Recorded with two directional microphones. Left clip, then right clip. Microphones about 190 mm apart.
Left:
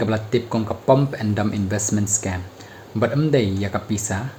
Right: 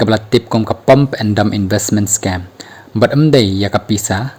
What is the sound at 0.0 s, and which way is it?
Speech, 45° right (ahead or behind).